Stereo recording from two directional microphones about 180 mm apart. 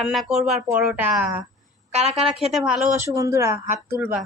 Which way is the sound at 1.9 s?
35° right (ahead or behind).